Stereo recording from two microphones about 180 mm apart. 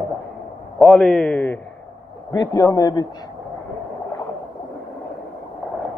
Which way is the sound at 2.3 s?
20° left (ahead or behind).